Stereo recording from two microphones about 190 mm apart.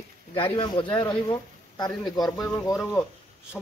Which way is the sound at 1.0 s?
20° left (ahead or behind).